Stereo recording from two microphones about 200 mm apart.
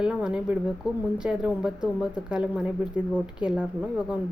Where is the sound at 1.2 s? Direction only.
5° right (ahead or behind).